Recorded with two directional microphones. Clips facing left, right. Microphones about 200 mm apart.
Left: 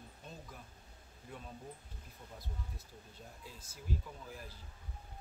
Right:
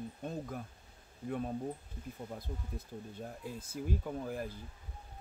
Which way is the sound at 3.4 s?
55° right (ahead or behind).